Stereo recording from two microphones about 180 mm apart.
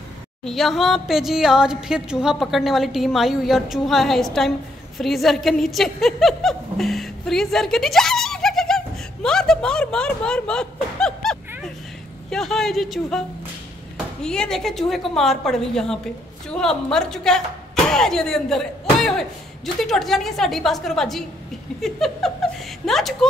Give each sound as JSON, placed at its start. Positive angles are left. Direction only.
{"t": 0.5, "sound": "a woman's voice", "side_deg": 0}